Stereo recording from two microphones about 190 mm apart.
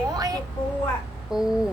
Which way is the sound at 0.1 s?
20° right (ahead or behind).